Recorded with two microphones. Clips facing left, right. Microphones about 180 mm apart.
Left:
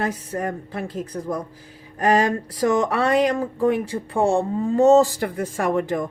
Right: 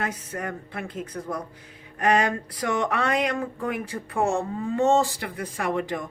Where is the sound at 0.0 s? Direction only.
35° left (ahead or behind).